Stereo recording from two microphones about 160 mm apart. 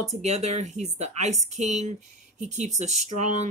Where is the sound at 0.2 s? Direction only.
45° right (ahead or behind).